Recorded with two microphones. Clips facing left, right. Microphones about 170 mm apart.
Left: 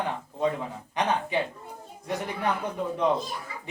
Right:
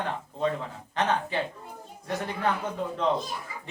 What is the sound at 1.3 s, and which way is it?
Speech, 15° left (ahead or behind).